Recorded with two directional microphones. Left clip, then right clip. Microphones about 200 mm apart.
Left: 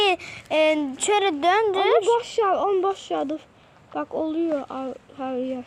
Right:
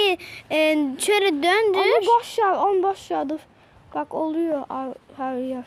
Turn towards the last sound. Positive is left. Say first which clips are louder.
# right 1 dB
turn(degrees=-65)  # may be behind; listen again after turning